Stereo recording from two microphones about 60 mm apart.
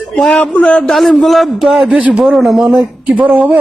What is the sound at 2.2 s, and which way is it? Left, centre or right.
Speech, centre.